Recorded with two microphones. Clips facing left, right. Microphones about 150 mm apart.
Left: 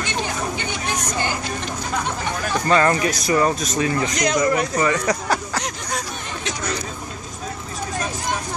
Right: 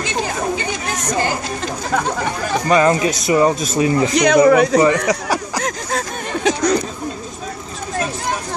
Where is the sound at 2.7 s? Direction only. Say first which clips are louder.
Right 4 dB; 20° right (ahead or behind).